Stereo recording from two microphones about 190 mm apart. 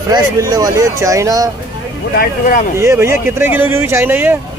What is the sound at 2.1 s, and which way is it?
Speech, 45° left (ahead or behind).